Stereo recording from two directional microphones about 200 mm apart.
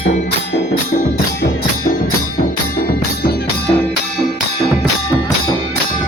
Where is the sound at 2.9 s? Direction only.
50° left (ahead or behind).